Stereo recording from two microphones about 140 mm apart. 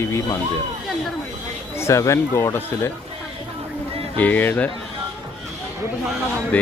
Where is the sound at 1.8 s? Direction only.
20° left (ahead or behind).